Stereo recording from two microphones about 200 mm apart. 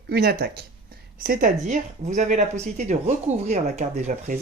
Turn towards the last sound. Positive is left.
turn(degrees=-40)  # may be behind; listen again after turning